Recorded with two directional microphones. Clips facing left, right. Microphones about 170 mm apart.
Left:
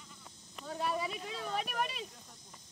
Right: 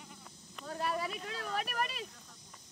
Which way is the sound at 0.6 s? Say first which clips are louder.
Even; centre (ahead or behind).